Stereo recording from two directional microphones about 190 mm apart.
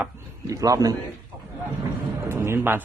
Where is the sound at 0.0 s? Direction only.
15° right (ahead or behind).